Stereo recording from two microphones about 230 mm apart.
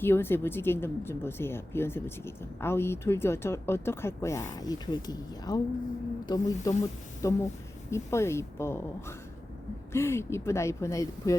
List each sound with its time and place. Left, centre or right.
0.0 s speech: centre